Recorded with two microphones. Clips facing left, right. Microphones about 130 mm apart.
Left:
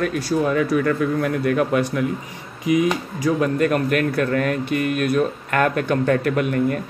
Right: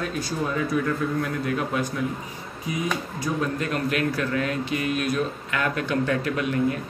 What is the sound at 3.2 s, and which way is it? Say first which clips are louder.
Speech: left 9 dB; 60° left (ahead or behind).